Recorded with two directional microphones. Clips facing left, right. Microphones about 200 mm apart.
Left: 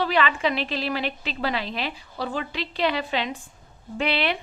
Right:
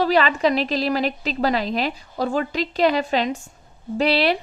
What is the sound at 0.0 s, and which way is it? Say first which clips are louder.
A woman's voice: right 5 dB; 40° right (ahead or behind).